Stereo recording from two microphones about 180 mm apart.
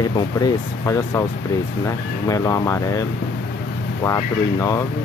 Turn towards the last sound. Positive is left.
turn(degrees=15)  # may be behind; listen again after turning